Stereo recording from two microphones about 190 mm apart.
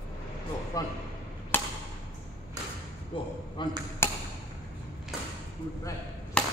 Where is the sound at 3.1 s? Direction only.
25° left (ahead or behind).